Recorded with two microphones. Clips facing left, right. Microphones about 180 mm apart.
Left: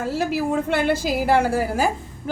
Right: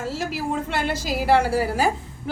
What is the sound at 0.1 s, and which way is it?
A woman's voice, 55° left (ahead or behind).